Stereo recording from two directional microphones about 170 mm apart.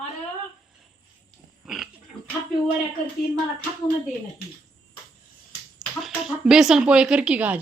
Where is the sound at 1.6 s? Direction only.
5° right (ahead or behind).